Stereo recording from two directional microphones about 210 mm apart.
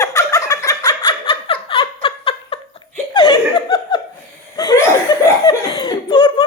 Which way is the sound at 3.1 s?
20° left (ahead or behind).